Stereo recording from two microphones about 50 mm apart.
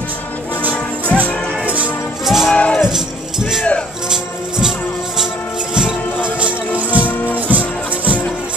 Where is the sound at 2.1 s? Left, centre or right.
Centre.